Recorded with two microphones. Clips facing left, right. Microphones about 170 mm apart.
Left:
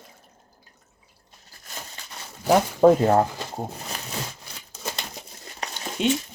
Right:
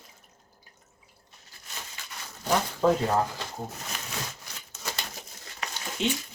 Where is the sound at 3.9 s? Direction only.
35° left (ahead or behind).